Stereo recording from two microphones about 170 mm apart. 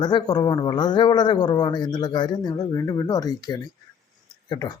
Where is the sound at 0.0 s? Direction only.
25° left (ahead or behind).